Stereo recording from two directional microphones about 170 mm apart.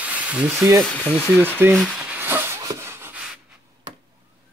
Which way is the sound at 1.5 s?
10° right (ahead or behind).